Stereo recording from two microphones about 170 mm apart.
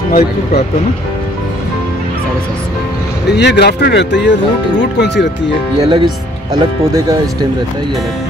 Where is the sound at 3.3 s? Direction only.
85° left.